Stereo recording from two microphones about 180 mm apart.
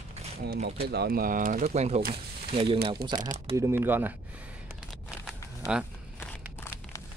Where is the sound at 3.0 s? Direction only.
60° right (ahead or behind).